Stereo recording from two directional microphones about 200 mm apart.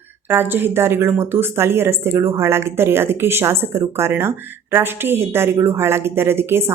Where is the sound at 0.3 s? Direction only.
10° right (ahead or behind).